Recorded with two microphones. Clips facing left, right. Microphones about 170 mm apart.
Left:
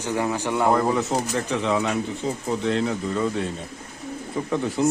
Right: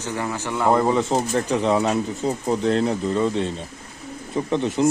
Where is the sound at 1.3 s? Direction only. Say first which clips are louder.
Right 3 dB; 40° right (ahead or behind).